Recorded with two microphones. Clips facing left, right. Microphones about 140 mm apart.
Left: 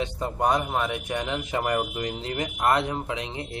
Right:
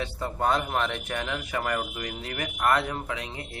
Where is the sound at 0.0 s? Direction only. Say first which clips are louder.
Left 2 dB; 20° left (ahead or behind).